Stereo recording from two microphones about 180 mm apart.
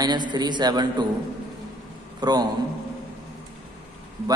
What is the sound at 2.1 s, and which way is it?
Speech, 20° right (ahead or behind).